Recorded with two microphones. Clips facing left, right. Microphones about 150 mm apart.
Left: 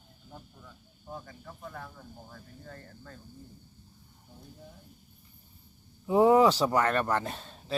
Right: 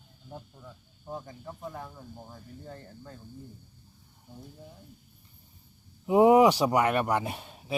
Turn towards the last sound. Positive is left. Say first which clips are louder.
# right 1 dB
turn(degrees=-10)  # may be behind; listen again after turning